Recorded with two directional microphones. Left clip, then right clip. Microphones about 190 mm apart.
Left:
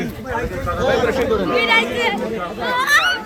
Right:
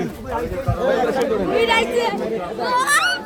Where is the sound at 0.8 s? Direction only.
30° left (ahead or behind).